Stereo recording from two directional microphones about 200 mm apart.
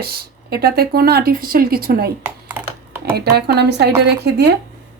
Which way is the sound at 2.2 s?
10° right (ahead or behind).